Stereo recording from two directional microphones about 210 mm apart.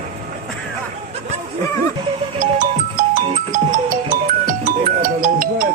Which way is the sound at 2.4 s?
40° right (ahead or behind).